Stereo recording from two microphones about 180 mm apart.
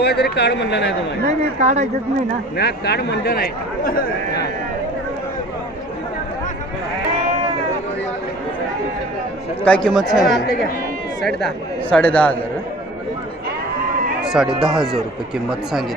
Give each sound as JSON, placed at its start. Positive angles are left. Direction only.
{"t": 0.0, "sound": "speech", "side_deg": 65}
{"t": 1.2, "sound": "speech", "side_deg": -45}
{"t": 2.6, "sound": "speech", "side_deg": 65}
{"t": 9.8, "sound": "a man's voice", "side_deg": 0}
{"t": 14.3, "sound": "speech", "side_deg": -5}